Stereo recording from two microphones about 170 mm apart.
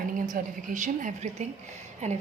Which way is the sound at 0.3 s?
45° right (ahead or behind).